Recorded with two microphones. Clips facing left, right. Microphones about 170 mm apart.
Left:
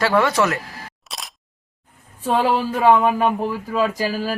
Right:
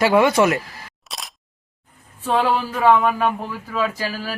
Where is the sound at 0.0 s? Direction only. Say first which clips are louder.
Right 3 dB; 15° right (ahead or behind).